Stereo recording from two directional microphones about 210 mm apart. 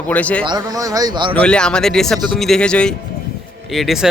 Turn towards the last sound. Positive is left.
turn(degrees=0)  # may be behind; listen again after turning